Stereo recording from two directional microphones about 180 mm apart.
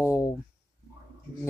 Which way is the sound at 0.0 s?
15° left (ahead or behind).